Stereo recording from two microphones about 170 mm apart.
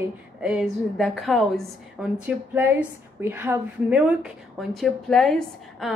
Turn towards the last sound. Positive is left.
turn(degrees=0)  # may be behind; listen again after turning